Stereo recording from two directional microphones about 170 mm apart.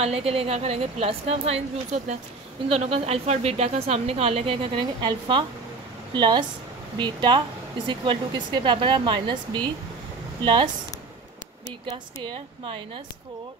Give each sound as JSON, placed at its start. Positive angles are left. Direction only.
{"t": 0.0, "sound": "speech", "side_deg": -35}
{"t": 11.9, "sound": "speech", "side_deg": -30}